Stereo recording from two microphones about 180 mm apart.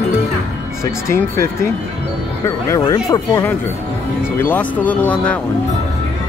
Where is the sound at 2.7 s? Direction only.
20° left (ahead or behind).